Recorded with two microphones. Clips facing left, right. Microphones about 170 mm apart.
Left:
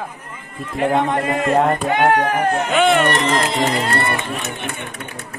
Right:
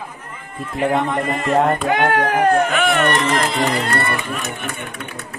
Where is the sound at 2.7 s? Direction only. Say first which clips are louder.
Left 2 dB; 25° left (ahead or behind).